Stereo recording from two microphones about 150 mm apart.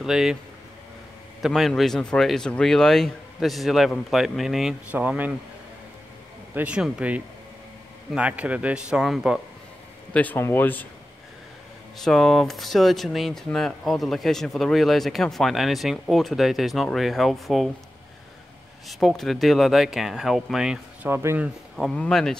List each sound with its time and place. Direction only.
0.0 s speech: 5° right (ahead or behind)
1.4 s speech: centre (ahead or behind)
6.5 s a man's voice: 10° right (ahead or behind)
10.1 s speech: 10° left (ahead or behind)
12.0 s speech: centre (ahead or behind)
18.9 s speech: centre (ahead or behind)
21.1 s a man's voice: 15° right (ahead or behind)
21.7 s speech: 5° left (ahead or behind)